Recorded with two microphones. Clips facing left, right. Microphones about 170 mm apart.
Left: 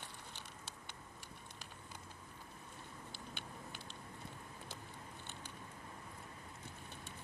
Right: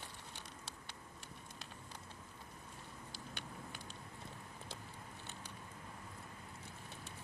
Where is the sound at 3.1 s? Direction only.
45° right (ahead or behind).